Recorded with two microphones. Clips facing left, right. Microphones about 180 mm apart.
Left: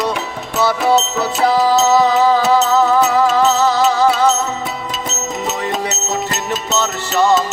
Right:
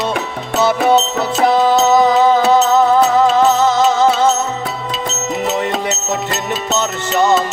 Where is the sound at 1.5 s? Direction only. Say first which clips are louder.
Right 1 dB; 20° right (ahead or behind).